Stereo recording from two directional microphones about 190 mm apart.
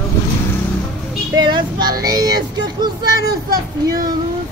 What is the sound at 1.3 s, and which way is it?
Child singing, 25° right (ahead or behind).